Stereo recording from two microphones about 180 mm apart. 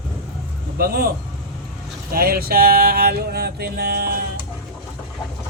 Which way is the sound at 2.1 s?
55° right (ahead or behind).